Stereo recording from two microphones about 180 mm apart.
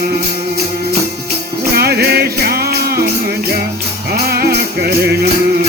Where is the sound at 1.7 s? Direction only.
60° right (ahead or behind).